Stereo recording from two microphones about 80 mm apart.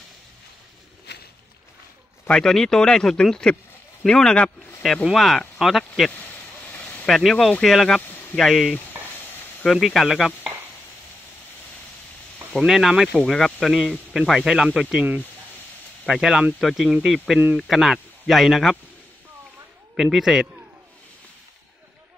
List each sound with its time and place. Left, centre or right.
2.2 s speech: centre
6.1 s vehicle: left
7.1 s speech: centre
8.1 s a sound: left
8.4 s speech: centre
9.2 s a sound: left
9.7 s speech: centre
12.5 s speech: centre
13.1 s speech: centre
16.1 s speech: centre
20.0 s speech: centre